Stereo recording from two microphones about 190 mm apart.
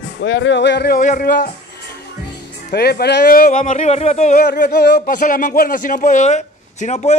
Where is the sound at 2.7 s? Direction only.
55° left (ahead or behind); by 4.4 s 35° left (ahead or behind).